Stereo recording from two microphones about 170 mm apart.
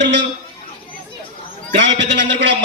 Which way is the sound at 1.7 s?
90° right.